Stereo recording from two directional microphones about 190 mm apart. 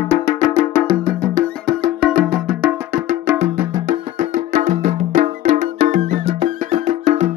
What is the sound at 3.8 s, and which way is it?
Music, 45° right (ahead or behind).